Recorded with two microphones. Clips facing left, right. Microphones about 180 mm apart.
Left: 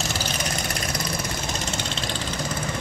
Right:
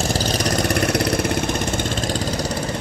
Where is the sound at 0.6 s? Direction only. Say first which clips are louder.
Right 10 dB; 60° right (ahead or behind); by 2.5 s 40° right (ahead or behind).